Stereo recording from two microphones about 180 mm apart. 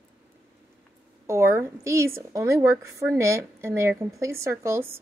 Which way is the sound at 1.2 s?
15° right (ahead or behind).